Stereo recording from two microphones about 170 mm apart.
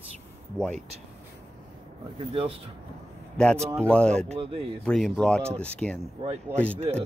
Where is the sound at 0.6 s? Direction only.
5° left (ahead or behind).